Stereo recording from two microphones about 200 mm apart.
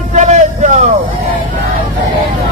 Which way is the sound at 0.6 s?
35° right (ahead or behind).